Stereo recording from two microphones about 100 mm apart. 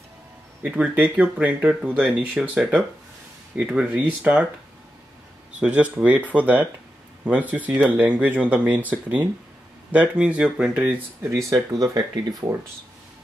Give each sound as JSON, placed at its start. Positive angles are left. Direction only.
{"t": 0.6, "sound": "speech", "side_deg": -15}
{"t": 5.6, "sound": "speech", "side_deg": -10}
{"t": 11.3, "sound": "speech", "side_deg": -35}